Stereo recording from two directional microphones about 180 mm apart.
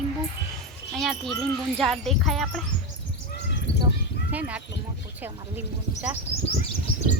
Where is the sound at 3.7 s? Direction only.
75° left (ahead or behind).